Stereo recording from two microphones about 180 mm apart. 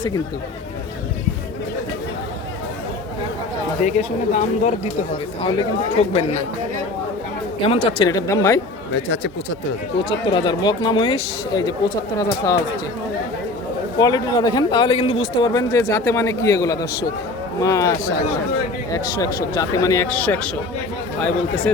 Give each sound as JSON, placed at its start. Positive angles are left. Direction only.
{"t": 3.8, "sound": "speech", "side_deg": 40}
{"t": 5.4, "sound": "speech", "side_deg": 30}
{"t": 7.6, "sound": "a man's voice", "side_deg": 30}
{"t": 9.0, "sound": "speech", "side_deg": 90}
{"t": 10.0, "sound": "a man's voice", "side_deg": 30}
{"t": 14.0, "sound": "a man's voice", "side_deg": 20}